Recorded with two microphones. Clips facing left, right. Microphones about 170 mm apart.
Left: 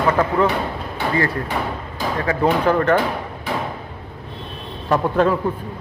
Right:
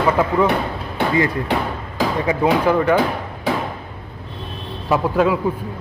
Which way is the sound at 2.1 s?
15° right (ahead or behind).